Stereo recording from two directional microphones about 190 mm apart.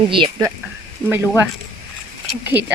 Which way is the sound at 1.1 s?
10° right (ahead or behind).